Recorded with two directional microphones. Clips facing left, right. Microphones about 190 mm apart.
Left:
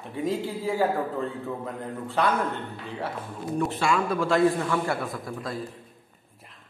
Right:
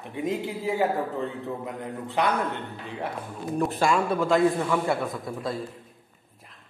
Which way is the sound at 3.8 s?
35° right (ahead or behind).